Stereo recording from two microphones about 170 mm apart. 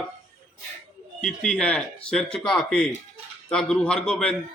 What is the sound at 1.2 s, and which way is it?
A man's voice, 5° left (ahead or behind).